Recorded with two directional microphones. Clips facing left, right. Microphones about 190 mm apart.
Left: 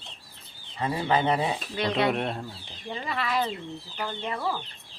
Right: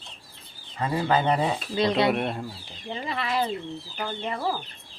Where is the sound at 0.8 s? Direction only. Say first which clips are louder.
Right 1 dB; 45° right (ahead or behind).